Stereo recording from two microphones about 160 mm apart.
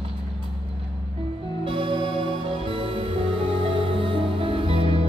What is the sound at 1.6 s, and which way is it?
Music, 35° right (ahead or behind).